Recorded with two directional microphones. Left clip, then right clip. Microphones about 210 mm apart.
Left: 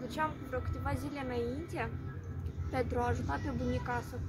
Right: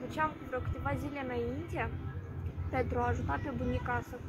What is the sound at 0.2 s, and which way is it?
Speech, 10° left (ahead or behind).